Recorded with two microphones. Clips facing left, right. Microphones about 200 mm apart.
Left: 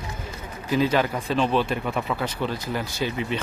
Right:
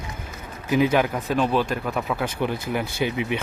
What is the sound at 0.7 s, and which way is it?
Speech, 15° right (ahead or behind).